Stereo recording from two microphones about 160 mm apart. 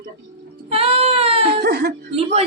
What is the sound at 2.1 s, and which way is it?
Speech, 40° right (ahead or behind).